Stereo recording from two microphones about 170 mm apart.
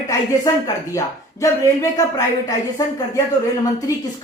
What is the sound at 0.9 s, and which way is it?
Speech, 20° left (ahead or behind).